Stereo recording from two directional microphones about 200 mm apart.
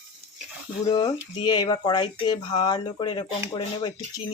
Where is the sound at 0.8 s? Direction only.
20° left (ahead or behind).